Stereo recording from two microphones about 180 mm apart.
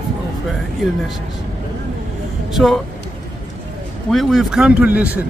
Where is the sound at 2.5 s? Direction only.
Centre (ahead or behind).